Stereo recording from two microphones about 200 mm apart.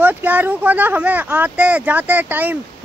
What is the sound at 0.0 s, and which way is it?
Speech, 10° right (ahead or behind).